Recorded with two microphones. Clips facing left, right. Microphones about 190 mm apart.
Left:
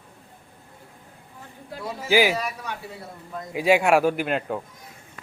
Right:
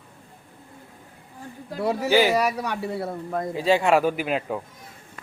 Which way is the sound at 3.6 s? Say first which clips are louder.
Left 1 dB; 10° left (ahead or behind).